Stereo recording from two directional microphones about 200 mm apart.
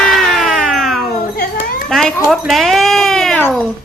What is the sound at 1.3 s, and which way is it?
Children playing, 45° left (ahead or behind).